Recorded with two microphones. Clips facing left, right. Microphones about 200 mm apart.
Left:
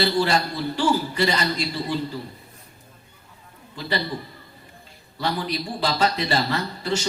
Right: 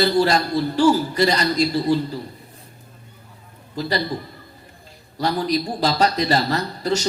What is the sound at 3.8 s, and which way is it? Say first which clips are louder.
Speech: right 8 dB; 40° right (ahead or behind).